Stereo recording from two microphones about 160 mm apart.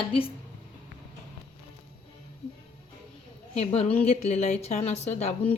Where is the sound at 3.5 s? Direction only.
40° left (ahead or behind).